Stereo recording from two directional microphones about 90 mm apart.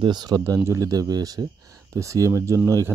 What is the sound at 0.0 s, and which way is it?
Speech, 55° right (ahead or behind).